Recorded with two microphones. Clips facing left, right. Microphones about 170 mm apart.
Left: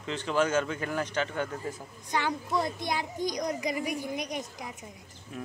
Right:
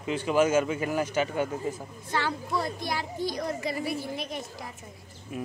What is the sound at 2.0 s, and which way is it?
A child's voice, 15° left (ahead or behind).